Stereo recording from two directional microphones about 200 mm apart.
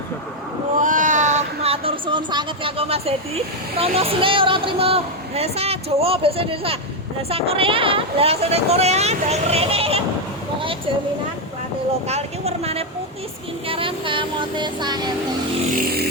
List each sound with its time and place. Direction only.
0.8 s speech: 40° right (ahead or behind)
12.0 s a woman's voice: 30° right (ahead or behind)